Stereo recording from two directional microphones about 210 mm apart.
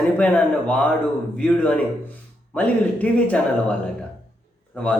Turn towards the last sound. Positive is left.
turn(degrees=5)  # may be behind; listen again after turning